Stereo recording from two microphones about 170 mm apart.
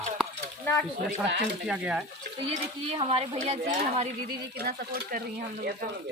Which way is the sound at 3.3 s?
45° right (ahead or behind).